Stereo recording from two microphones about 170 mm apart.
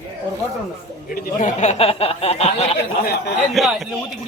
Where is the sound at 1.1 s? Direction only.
55° left (ahead or behind); by 2.7 s 35° left (ahead or behind).